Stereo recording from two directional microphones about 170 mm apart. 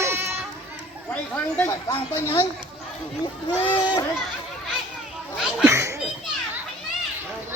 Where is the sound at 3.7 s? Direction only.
25° left (ahead or behind).